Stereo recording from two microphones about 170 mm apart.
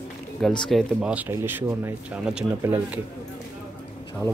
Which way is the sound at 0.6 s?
Centre (ahead or behind).